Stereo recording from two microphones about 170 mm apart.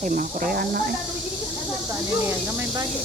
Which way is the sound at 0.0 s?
55° right (ahead or behind).